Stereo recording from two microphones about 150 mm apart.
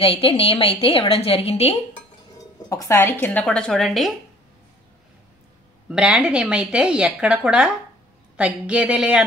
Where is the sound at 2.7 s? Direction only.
20° left (ahead or behind); by 4.1 s centre (ahead or behind).